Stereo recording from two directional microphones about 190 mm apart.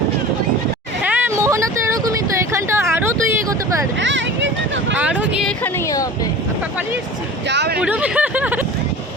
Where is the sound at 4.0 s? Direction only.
70° right (ahead or behind).